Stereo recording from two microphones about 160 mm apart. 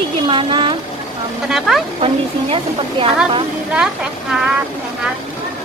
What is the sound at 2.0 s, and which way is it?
A woman's voice, 35° right (ahead or behind).